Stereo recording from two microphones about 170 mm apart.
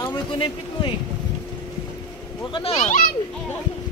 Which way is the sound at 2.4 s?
30° left (ahead or behind).